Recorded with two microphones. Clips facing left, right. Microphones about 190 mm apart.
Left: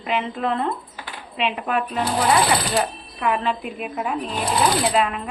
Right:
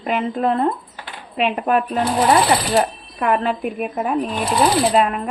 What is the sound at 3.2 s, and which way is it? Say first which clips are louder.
A woman's voice: right 4 dB; 50° right (ahead or behind).